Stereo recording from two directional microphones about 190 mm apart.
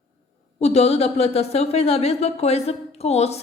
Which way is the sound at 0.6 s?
35° left (ahead or behind).